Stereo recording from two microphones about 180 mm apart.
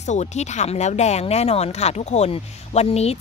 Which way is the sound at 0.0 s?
40° left (ahead or behind).